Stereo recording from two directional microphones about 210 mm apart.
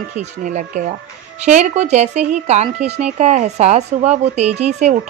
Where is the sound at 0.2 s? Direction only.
35° right (ahead or behind).